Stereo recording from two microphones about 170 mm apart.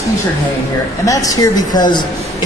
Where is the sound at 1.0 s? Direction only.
20° left (ahead or behind).